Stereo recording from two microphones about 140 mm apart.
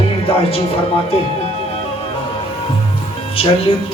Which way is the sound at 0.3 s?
45° left (ahead or behind).